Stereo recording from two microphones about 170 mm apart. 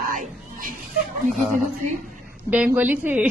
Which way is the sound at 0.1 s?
50° right (ahead or behind).